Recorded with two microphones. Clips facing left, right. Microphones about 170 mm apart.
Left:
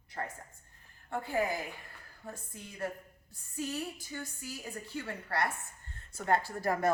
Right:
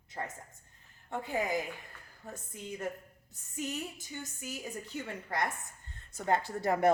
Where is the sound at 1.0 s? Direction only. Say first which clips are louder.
Left 1 dB; 20° right (ahead or behind).